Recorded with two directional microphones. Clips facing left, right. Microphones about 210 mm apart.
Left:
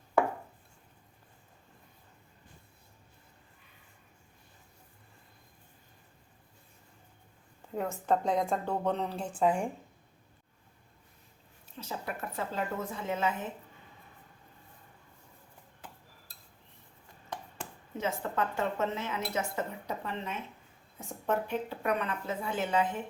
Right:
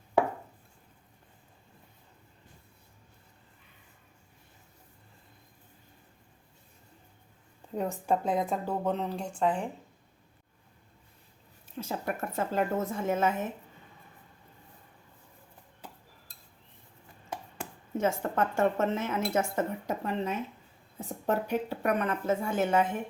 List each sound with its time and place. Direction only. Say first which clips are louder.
7.8 s speech: right 1 dB; 15° right (ahead or behind); by 9.6 s 10° left (ahead or behind)
11.8 s speech: right 5 dB; 50° right (ahead or behind)
17.9 s speech: right 4 dB; 50° right (ahead or behind)